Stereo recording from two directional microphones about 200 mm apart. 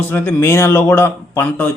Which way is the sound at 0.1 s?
10° left (ahead or behind).